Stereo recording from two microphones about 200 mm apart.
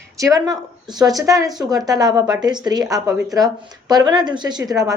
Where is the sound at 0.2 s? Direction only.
15° right (ahead or behind).